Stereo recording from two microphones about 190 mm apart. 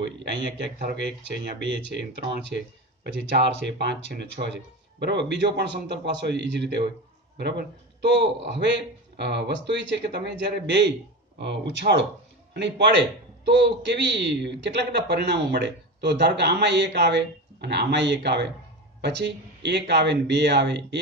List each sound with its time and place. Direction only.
0.9 s a man's voice: 65° right (ahead or behind)